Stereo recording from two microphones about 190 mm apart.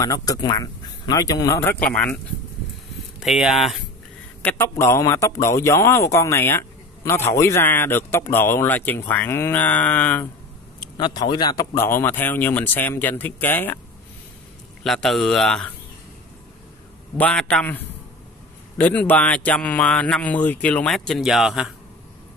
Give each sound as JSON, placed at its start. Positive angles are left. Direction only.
{"t": 0.0, "sound": "speech", "side_deg": 20}
{"t": 3.2, "sound": "speech", "side_deg": 0}
{"t": 4.4, "sound": "a man's voice", "side_deg": 10}
{"t": 11.0, "sound": "a man's voice", "side_deg": 25}
{"t": 14.8, "sound": "speech", "side_deg": 0}
{"t": 17.2, "sound": "a man's voice", "side_deg": 5}